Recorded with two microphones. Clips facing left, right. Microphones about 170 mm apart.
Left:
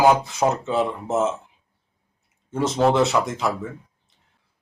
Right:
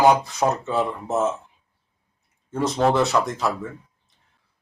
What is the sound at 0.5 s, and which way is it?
Speech, 20° left (ahead or behind).